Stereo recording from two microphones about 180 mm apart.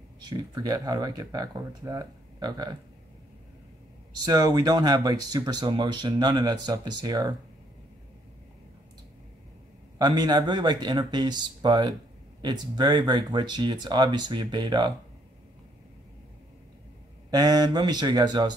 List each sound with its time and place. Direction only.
0.2 s speech: 20° right (ahead or behind)
4.2 s speech: 20° right (ahead or behind)
9.9 s speech: 25° right (ahead or behind)
17.3 s speech: 20° right (ahead or behind)